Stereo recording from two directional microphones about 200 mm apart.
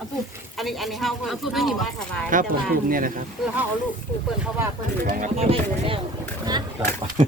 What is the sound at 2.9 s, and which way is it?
Speech, 45° right (ahead or behind).